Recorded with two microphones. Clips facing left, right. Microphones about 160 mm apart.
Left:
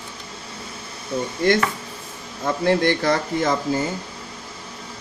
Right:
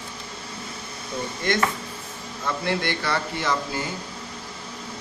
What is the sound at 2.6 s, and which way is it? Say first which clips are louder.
Speech: left 9 dB; 45° left (ahead or behind).